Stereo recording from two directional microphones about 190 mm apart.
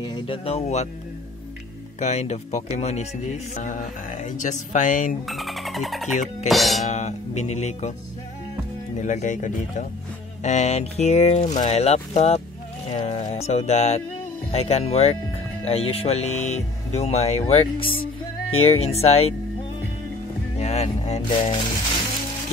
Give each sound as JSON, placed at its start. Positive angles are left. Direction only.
{"t": 0.0, "sound": "speech", "side_deg": 25}
{"t": 2.0, "sound": "speech", "side_deg": 35}
{"t": 5.2, "sound": "speech", "side_deg": 0}
{"t": 6.5, "sound": "music", "side_deg": 0}
{"t": 6.8, "sound": "speech", "side_deg": 40}
{"t": 9.0, "sound": "speech", "side_deg": 40}
{"t": 12.9, "sound": "music", "side_deg": 30}
{"t": 14.5, "sound": "speech", "side_deg": 35}
{"t": 20.5, "sound": "music", "side_deg": 35}